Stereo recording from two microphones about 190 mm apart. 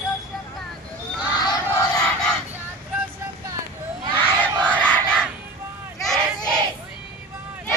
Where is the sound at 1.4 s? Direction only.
20° left (ahead or behind).